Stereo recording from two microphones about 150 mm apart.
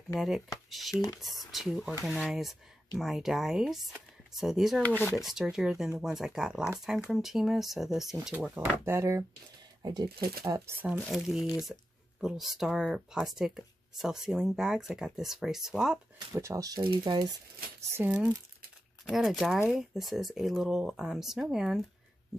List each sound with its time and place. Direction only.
0.1 s speech: centre (ahead or behind)
4.8 s speech: 10° left (ahead or behind)
5.1 s speech: centre (ahead or behind)
8.8 s speech: 15° right (ahead or behind)
10.8 s speech: 5° right (ahead or behind)
16.3 s speech: 20° right (ahead or behind)
17.9 s speech: 10° right (ahead or behind)